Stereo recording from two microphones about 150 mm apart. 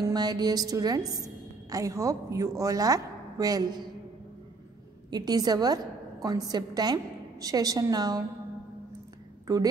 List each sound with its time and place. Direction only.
0.0 s a woman's voice: 25° right (ahead or behind)
5.1 s a woman's voice: 25° right (ahead or behind)